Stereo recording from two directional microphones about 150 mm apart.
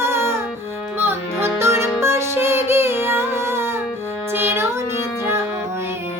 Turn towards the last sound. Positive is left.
turn(degrees=-15)  # may be behind; listen again after turning